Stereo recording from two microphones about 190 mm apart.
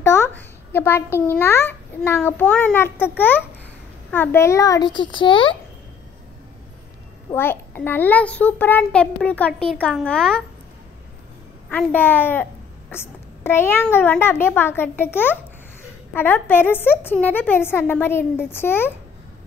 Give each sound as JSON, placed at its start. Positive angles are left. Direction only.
{"t": 0.0, "sound": "a sound", "side_deg": 15}
{"t": 1.4, "sound": "a woman's voice", "side_deg": 10}
{"t": 7.2, "sound": "a woman's voice", "side_deg": 10}
{"t": 11.7, "sound": "a woman's voice", "side_deg": 10}